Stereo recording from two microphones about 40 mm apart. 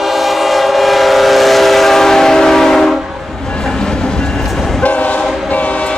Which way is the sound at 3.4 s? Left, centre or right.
Centre.